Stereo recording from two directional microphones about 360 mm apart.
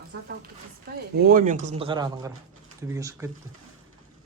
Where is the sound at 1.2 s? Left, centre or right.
Right.